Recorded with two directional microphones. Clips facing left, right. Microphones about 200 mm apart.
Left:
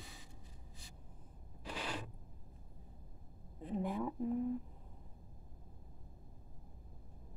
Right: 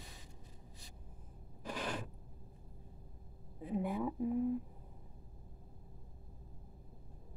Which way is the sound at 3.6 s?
10° right (ahead or behind).